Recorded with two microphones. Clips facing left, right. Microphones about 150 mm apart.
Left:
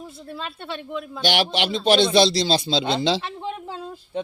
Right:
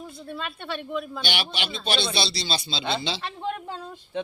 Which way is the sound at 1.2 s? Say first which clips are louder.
Left 8 dB; 90° left.